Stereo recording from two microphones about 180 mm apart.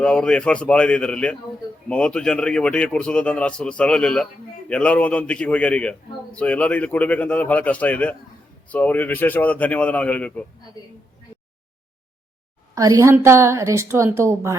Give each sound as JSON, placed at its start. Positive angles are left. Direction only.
{"t": 0.0, "sound": "a man's voice", "side_deg": 5}
{"t": 12.7, "sound": "a woman's voice", "side_deg": -20}